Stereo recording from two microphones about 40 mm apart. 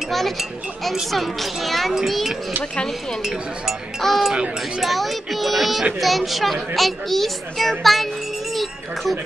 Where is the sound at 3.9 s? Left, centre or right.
Centre.